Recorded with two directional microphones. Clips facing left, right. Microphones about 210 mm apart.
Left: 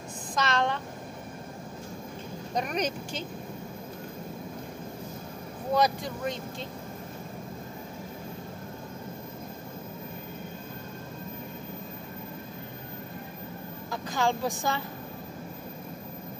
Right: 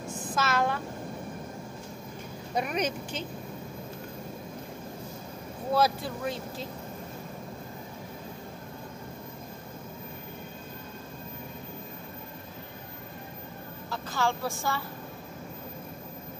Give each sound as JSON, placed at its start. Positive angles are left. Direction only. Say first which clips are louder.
{"t": 0.3, "sound": "a sound", "louder": "even", "side_deg": -5}
{"t": 2.5, "sound": "a woman's voice", "louder": "even", "side_deg": -5}
{"t": 5.8, "sound": "speech", "louder": "even", "side_deg": -5}
{"t": 14.1, "sound": "a woman's voice", "louder": "left 2 dB", "side_deg": 15}